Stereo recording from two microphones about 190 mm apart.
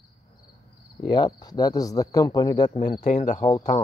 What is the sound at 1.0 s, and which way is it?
Speech, 20° left (ahead or behind).